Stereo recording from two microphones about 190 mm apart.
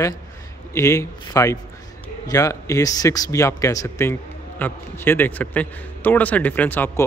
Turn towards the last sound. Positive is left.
turn(degrees=10)  # may be behind; listen again after turning